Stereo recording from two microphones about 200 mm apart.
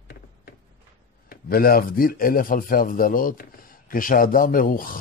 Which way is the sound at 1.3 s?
45° left (ahead or behind).